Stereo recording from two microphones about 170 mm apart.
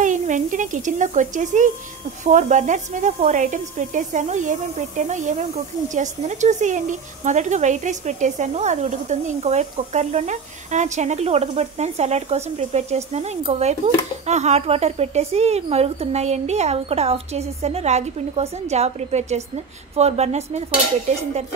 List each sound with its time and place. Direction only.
0.0 s speech: 50° right (ahead or behind)